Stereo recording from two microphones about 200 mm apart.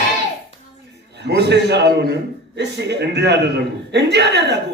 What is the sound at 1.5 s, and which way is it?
A man's voice, 60° right (ahead or behind).